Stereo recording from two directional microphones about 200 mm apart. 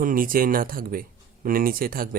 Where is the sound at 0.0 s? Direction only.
45° right (ahead or behind).